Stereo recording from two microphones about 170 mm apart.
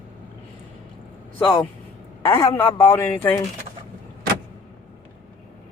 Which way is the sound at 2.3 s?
15° left (ahead or behind).